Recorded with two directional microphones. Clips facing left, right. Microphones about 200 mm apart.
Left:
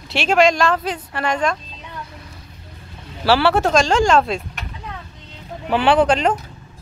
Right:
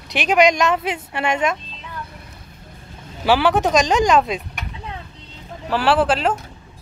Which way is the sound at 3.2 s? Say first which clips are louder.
Left 1 dB; 15° right (ahead or behind).